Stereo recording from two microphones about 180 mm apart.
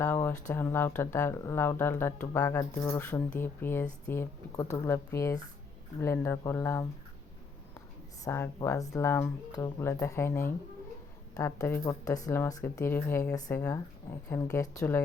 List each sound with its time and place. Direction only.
0.0 s a sound: 10° left (ahead or behind)
0.5 s speech: 10° left (ahead or behind)
8.2 s speech: 15° left (ahead or behind)